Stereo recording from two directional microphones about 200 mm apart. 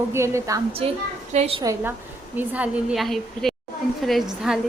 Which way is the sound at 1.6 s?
15° right (ahead or behind).